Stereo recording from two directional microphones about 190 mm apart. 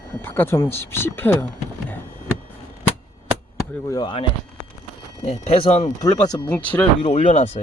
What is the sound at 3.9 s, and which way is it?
Speech, 25° left (ahead or behind).